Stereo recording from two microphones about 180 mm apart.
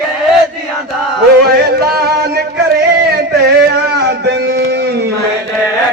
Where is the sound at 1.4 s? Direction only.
60° right (ahead or behind).